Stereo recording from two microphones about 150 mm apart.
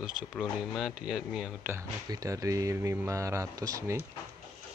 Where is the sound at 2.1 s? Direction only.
20° right (ahead or behind).